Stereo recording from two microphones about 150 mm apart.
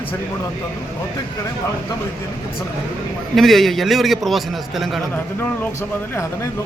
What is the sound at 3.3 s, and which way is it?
Speech, centre (ahead or behind).